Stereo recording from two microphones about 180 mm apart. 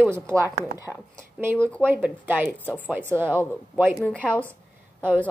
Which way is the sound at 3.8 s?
Centre (ahead or behind).